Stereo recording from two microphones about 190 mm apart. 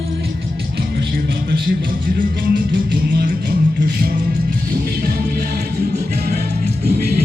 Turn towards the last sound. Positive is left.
turn(degrees=-55)  # may be behind; listen again after turning